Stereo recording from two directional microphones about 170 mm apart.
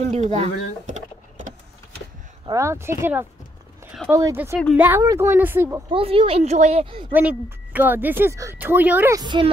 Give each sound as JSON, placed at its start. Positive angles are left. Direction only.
{"t": 0.0, "sound": "power windows", "side_deg": -40}
{"t": 2.4, "sound": "speech", "side_deg": -15}
{"t": 5.9, "sound": "speech", "side_deg": -30}
{"t": 7.1, "sound": "speech", "side_deg": -10}
{"t": 9.2, "sound": "a woman's voice", "side_deg": -25}